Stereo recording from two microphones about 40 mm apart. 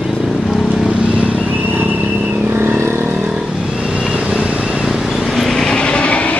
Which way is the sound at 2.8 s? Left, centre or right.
Right.